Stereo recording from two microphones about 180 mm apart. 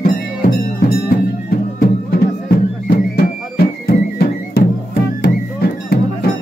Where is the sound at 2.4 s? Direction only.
55° left (ahead or behind).